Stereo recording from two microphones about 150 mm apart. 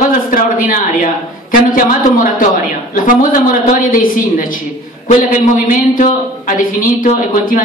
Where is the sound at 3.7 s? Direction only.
65° left (ahead or behind).